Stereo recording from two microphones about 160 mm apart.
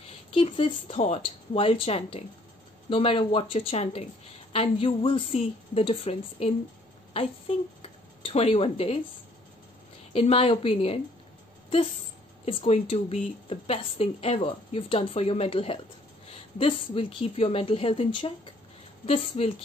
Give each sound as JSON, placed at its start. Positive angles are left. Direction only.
{"t": 0.3, "sound": "speech", "side_deg": 35}
{"t": 10.1, "sound": "speech", "side_deg": 35}
{"t": 12.4, "sound": "speech", "side_deg": 35}